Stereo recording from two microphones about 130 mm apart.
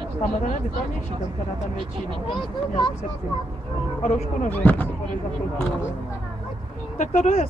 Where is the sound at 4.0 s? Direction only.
65° left (ahead or behind).